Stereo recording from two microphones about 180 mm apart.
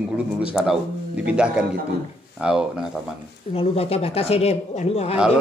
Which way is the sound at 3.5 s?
35° left (ahead or behind).